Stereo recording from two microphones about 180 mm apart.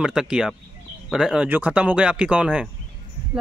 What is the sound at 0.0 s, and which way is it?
Speech, 5° right (ahead or behind).